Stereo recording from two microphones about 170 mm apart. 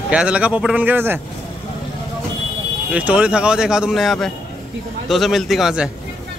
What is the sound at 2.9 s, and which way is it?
Speech, 10° right (ahead or behind).